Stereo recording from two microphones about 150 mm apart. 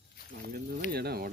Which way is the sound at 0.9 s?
90° right.